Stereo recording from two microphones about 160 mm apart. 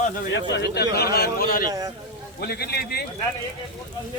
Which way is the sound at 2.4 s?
80° left.